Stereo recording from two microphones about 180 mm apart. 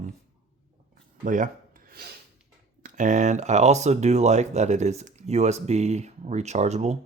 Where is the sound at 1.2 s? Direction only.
45° right (ahead or behind).